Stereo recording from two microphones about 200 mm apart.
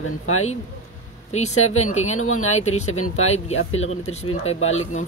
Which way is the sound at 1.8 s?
35° left (ahead or behind).